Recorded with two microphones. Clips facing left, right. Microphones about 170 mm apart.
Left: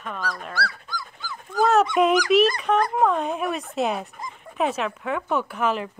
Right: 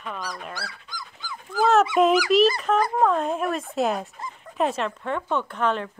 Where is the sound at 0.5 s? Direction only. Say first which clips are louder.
Left 7 dB; 15° right (ahead or behind).